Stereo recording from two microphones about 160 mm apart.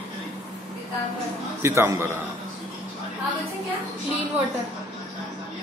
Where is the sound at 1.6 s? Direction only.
15° right (ahead or behind).